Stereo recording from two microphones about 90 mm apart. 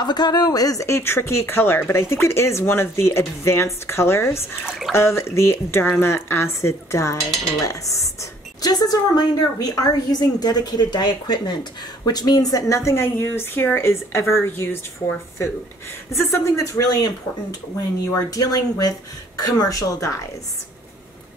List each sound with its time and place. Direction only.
0.0 s speech: 50° left (ahead or behind); by 4.4 s 30° left (ahead or behind)
4.6 s speech: 5° right (ahead or behind)
4.9 s speech: 30° left (ahead or behind)
16.1 s speech: 30° left (ahead or behind)